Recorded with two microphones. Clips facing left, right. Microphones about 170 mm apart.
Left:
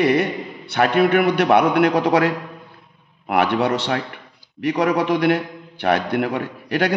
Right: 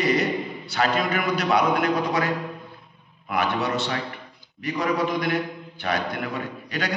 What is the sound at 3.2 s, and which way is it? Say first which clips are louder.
A man's voice: left 6 dB; 60° left (ahead or behind).